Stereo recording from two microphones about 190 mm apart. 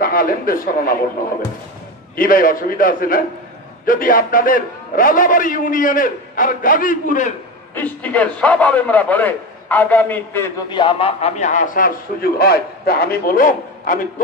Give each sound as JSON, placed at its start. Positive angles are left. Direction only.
{"t": 0.0, "sound": "a man's voice", "side_deg": 50}
{"t": 2.1, "sound": "a man's voice", "side_deg": 50}
{"t": 7.7, "sound": "a man's voice", "side_deg": 10}
{"t": 10.7, "sound": "a man's voice", "side_deg": 25}